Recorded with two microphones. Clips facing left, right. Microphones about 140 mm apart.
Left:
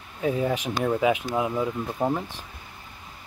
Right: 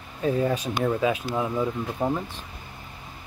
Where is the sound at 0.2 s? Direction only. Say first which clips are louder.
Right 1 dB; 10° left (ahead or behind).